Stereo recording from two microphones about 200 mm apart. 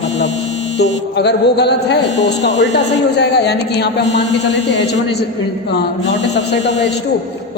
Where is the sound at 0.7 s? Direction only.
60° left (ahead or behind).